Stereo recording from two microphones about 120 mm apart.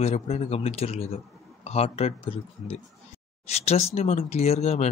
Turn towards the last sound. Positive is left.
turn(degrees=65)  # may be behind; listen again after turning